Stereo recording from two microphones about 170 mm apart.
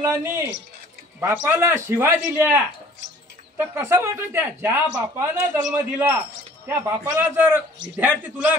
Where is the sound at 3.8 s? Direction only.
15° right (ahead or behind).